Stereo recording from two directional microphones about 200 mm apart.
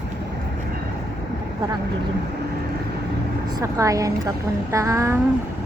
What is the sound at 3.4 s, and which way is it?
Speech, 15° right (ahead or behind).